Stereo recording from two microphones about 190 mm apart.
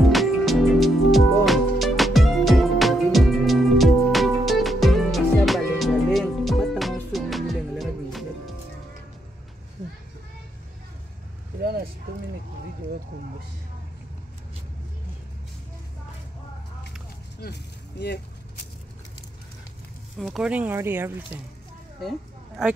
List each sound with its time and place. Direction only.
0.0 s music: centre (ahead or behind)
17.4 s vehicle: 60° left (ahead or behind)
20.2 s a sound: centre (ahead or behind)